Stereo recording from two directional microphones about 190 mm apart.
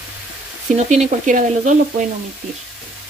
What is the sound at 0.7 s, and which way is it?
Frying, 40° right (ahead or behind).